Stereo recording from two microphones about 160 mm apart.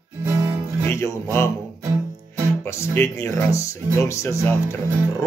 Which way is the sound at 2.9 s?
15° left (ahead or behind).